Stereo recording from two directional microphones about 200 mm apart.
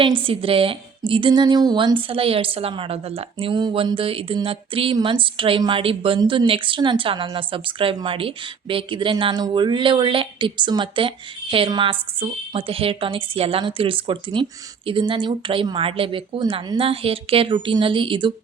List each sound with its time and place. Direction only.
0.0 s a woman's voice: 25° right (ahead or behind)